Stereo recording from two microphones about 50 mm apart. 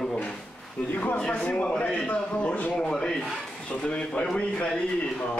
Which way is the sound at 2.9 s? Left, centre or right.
Centre.